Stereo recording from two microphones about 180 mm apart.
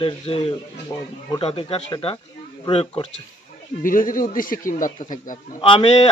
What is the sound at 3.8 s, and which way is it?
Speech, 50° left (ahead or behind).